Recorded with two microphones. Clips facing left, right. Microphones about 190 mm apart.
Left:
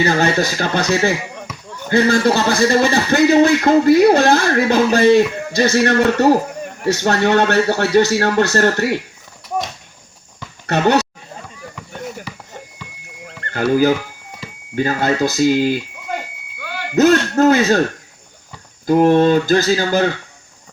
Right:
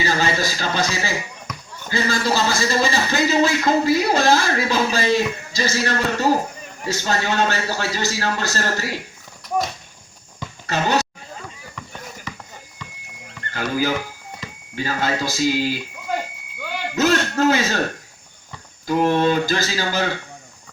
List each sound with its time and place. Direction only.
0.0 s speech: 60° left (ahead or behind)
10.7 s speech: 65° left (ahead or behind)
13.5 s speech: 55° left (ahead or behind)
16.9 s speech: 50° left (ahead or behind)
18.9 s speech: 50° left (ahead or behind)